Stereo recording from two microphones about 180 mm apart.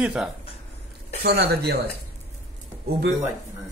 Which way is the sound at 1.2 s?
60° right (ahead or behind).